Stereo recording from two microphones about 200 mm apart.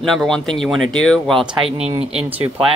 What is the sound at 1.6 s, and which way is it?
Speech, 30° right (ahead or behind).